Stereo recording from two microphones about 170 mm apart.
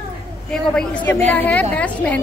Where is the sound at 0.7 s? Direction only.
5° left (ahead or behind).